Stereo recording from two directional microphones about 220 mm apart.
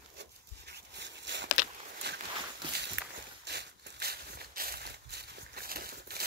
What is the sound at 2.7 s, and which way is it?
Walk, 50° right (ahead or behind).